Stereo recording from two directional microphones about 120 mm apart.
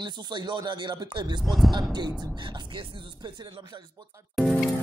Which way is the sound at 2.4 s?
45° right (ahead or behind).